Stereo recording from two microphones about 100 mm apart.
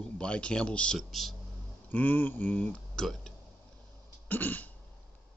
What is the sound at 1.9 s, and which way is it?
Speech, 15° left (ahead or behind).